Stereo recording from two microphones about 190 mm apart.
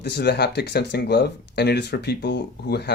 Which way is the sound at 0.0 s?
60° left (ahead or behind).